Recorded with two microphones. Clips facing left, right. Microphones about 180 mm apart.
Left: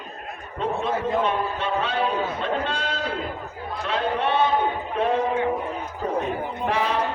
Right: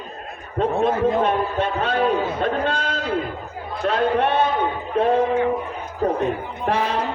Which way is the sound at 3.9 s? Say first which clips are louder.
Right 4 dB; 50° right (ahead or behind).